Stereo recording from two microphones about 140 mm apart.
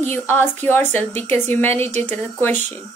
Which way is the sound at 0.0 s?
15° left (ahead or behind).